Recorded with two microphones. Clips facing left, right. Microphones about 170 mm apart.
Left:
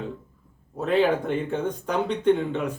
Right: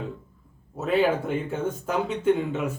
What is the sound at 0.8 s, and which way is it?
Speech, 5° right (ahead or behind).